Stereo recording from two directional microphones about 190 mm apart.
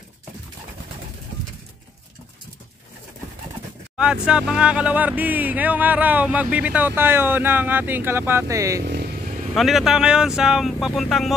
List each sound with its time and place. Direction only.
3.9 s speech: 5° right (ahead or behind)
8.8 s vehicle: 55° right (ahead or behind)
9.5 s speech: centre (ahead or behind)